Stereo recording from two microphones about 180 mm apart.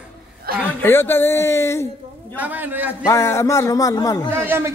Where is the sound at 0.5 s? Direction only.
55° right (ahead or behind).